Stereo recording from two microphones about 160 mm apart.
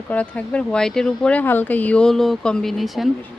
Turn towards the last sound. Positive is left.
turn(degrees=0)  # may be behind; listen again after turning